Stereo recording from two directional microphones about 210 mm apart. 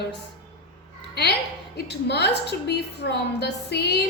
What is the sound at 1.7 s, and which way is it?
A woman's voice, 50° left (ahead or behind).